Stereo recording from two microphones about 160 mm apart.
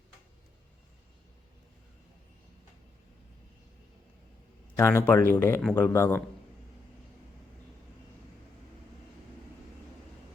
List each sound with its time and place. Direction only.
4.8 s speech: 15° left (ahead or behind)